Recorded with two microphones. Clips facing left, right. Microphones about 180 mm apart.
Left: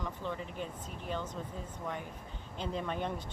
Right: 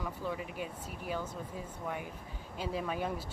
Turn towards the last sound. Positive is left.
turn(degrees=-5)  # may be behind; listen again after turning